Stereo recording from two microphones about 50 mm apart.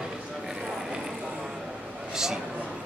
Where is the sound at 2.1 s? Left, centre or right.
Centre.